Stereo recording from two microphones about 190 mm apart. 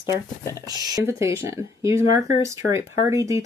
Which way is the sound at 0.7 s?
20° right (ahead or behind).